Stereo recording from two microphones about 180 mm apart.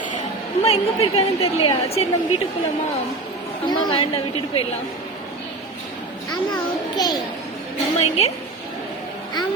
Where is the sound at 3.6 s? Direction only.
25° left (ahead or behind).